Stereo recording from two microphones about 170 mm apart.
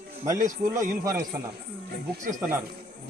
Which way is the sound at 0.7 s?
20° right (ahead or behind).